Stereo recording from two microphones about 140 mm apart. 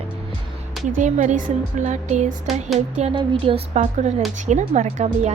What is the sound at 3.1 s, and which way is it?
A woman's voice, 35° right (ahead or behind).